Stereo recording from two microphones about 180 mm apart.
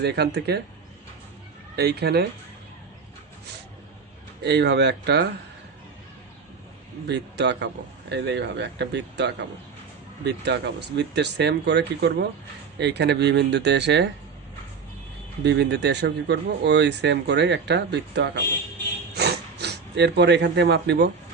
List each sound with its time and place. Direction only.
0.0 s speech: 65° right (ahead or behind)
1.7 s speech: 65° right (ahead or behind)
4.4 s speech: 70° right (ahead or behind)
7.1 s speech: 70° right (ahead or behind)
15.4 s speech: 70° right (ahead or behind)
19.1 s a sound: 65° right (ahead or behind)